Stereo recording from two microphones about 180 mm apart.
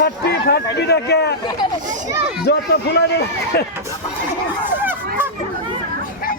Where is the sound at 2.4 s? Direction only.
70° left (ahead or behind).